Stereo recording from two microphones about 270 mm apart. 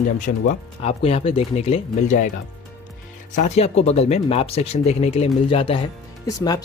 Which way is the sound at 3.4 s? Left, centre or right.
Left.